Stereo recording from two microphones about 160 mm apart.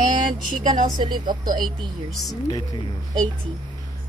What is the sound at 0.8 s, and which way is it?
A woman's voice, 30° right (ahead or behind).